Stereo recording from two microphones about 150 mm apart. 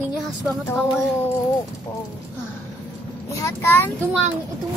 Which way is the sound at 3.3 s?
20° left (ahead or behind).